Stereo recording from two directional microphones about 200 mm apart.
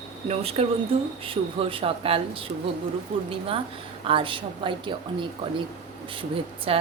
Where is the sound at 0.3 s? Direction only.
30° right (ahead or behind).